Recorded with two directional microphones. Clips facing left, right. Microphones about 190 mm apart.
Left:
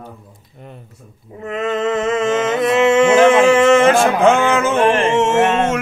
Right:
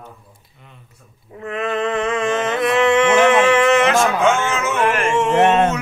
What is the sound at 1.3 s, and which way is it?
Mantra, 25° left (ahead or behind).